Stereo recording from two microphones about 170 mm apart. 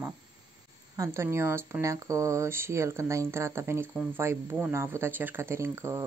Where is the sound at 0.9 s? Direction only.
15° right (ahead or behind).